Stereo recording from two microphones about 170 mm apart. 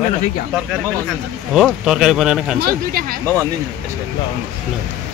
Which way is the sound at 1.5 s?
5° right (ahead or behind).